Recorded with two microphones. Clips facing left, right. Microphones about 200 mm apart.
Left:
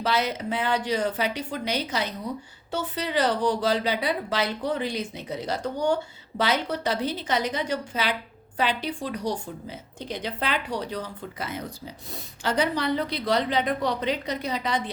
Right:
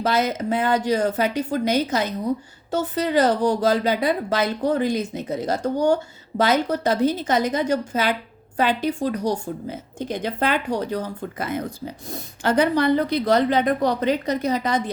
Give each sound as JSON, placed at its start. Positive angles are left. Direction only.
{"t": 0.0, "sound": "speech", "side_deg": -45}